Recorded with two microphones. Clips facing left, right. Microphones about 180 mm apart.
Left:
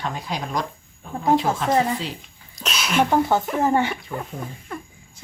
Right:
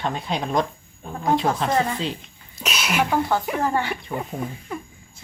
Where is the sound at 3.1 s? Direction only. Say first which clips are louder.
Left 2 dB; 20° left (ahead or behind).